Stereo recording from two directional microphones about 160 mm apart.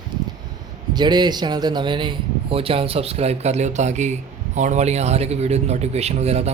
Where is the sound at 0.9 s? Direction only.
25° right (ahead or behind).